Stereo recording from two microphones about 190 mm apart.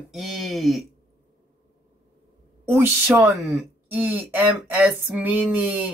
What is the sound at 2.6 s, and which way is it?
Speech, 10° right (ahead or behind).